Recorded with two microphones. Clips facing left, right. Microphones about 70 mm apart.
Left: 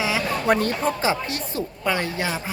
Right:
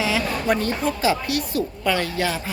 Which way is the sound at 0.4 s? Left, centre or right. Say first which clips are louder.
Left 3 dB; left.